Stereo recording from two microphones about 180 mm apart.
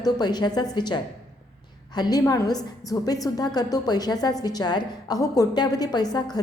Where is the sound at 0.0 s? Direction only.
25° left (ahead or behind).